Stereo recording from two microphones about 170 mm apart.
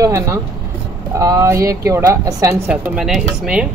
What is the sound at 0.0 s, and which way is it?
Speech, 20° right (ahead or behind).